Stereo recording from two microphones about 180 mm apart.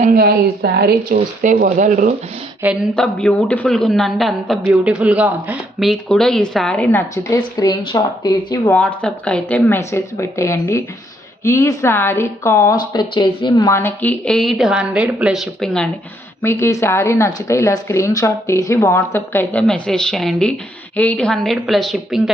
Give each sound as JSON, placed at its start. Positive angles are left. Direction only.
{"t": 0.0, "sound": "speech", "side_deg": -55}
{"t": 2.9, "sound": "speech", "side_deg": 5}
{"t": 7.3, "sound": "speech", "side_deg": 20}
{"t": 8.7, "sound": "speech", "side_deg": 5}
{"t": 16.4, "sound": "speech", "side_deg": 15}